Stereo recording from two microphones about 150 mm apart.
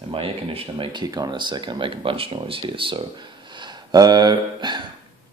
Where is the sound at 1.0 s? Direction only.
25° right (ahead or behind).